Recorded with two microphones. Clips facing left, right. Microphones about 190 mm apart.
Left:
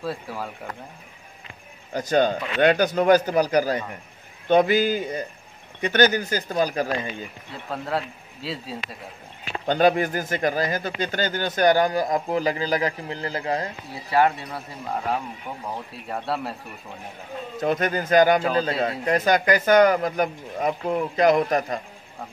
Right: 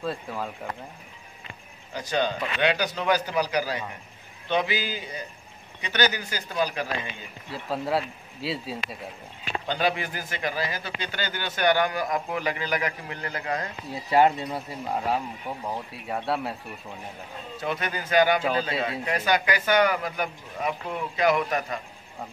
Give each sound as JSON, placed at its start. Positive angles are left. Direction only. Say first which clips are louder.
{"t": 0.0, "sound": "speech", "louder": "left 1 dB", "side_deg": 5}
{"t": 2.0, "sound": "a man's voice", "louder": "left 6 dB", "side_deg": 45}
{"t": 7.7, "sound": "speech", "louder": "right 1 dB", "side_deg": -5}
{"t": 9.7, "sound": "a man's voice", "louder": "left 8 dB", "side_deg": 45}
{"t": 14.1, "sound": "speech", "louder": "even", "side_deg": -20}
{"t": 16.1, "sound": "speech", "louder": "even", "side_deg": 0}
{"t": 17.6, "sound": "a man's voice", "louder": "left 7 dB", "side_deg": 45}